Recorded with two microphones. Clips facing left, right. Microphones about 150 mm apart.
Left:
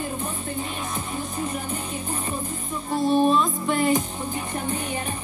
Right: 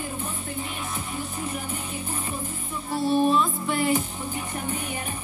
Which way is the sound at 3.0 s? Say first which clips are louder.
Left 2 dB; 20° left (ahead or behind).